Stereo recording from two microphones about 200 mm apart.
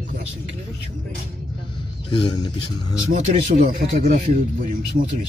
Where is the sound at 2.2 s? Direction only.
20° left (ahead or behind).